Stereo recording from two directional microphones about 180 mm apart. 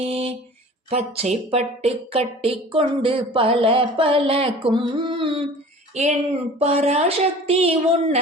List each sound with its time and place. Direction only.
0.0 s mantra: 35° right (ahead or behind)
0.9 s speech: 35° right (ahead or behind)